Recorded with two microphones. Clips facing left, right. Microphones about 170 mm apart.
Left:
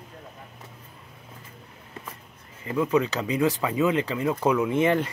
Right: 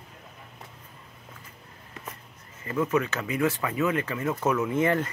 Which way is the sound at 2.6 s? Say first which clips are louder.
Left 3 dB; 15° left (ahead or behind).